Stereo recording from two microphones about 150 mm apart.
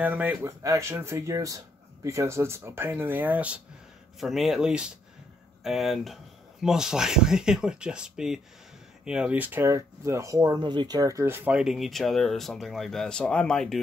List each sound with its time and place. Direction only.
0.0 s speech: 10° right (ahead or behind)